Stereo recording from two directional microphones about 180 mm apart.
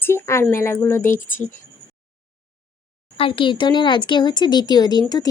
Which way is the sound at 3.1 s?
30° left (ahead or behind).